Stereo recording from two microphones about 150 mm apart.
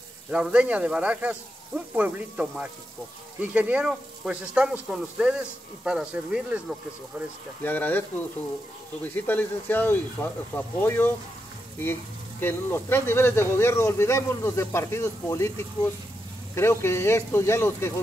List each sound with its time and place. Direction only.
0.3 s speech: 5° right (ahead or behind)
7.6 s speech: 10° left (ahead or behind)
9.0 s speech: 10° left (ahead or behind)